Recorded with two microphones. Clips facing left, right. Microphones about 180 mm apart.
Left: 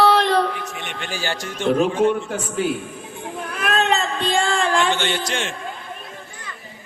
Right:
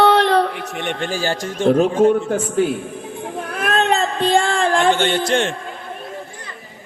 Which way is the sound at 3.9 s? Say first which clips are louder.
Right 4 dB; 55° right (ahead or behind).